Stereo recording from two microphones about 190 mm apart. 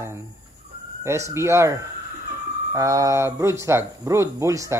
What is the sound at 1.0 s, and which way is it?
Speech, 15° right (ahead or behind).